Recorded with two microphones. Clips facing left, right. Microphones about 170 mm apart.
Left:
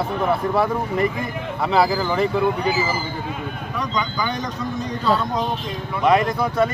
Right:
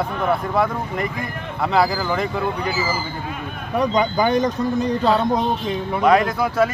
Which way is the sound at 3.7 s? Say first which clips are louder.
Right 7 dB; 55° right (ahead or behind).